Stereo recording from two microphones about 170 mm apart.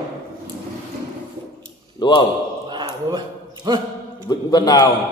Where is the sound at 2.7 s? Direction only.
25° right (ahead or behind).